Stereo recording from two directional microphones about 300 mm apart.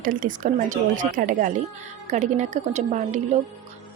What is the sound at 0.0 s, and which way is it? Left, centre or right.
A woman's voice, right.